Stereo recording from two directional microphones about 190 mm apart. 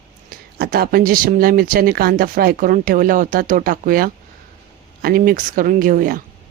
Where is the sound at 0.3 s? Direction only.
50° right (ahead or behind).